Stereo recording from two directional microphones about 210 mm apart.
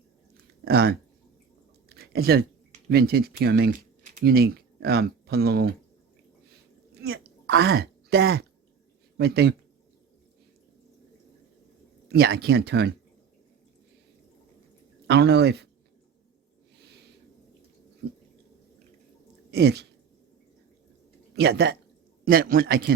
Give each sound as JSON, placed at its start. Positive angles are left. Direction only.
{"t": 0.3, "sound": "chewing", "side_deg": -50}
{"t": 1.9, "sound": "a sound", "side_deg": -45}
{"t": 2.9, "sound": "speech", "side_deg": -50}
{"t": 7.0, "sound": "speech", "side_deg": -50}
{"t": 12.0, "sound": "speech", "side_deg": -50}
{"t": 15.0, "sound": "speech", "side_deg": -55}
{"t": 19.5, "sound": "a sound", "side_deg": -55}
{"t": 21.3, "sound": "speech", "side_deg": -55}
{"t": 22.2, "sound": "speech", "side_deg": -45}